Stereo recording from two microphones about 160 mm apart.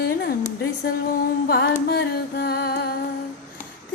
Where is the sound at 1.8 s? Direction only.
85° left.